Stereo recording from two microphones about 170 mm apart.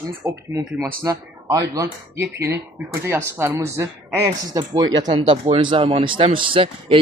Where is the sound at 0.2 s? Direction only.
15° right (ahead or behind).